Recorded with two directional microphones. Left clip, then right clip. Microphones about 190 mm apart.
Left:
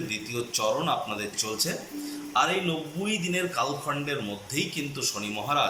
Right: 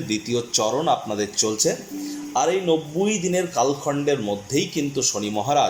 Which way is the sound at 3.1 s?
25° right (ahead or behind).